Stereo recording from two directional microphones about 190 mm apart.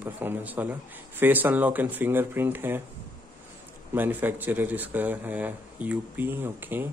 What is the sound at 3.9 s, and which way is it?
Speech, 10° right (ahead or behind).